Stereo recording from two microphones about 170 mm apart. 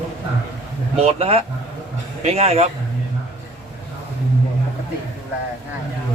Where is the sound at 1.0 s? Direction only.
35° right (ahead or behind).